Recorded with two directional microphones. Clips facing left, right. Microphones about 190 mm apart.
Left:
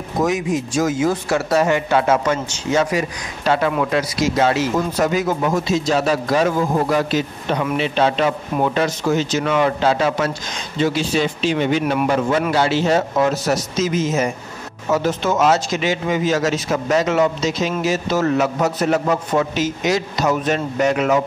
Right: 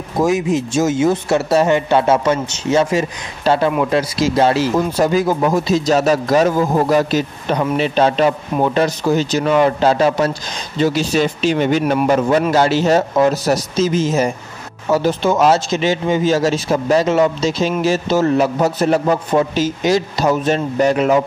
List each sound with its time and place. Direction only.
0.2 s speech: 25° right (ahead or behind)